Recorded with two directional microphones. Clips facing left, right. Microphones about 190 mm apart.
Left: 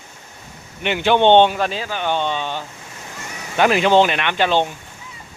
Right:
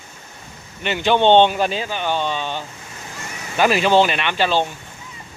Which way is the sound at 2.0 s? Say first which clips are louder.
Left 2 dB; 20° left (ahead or behind).